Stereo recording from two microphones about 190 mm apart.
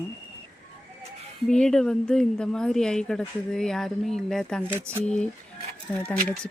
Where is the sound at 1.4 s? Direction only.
5° left (ahead or behind).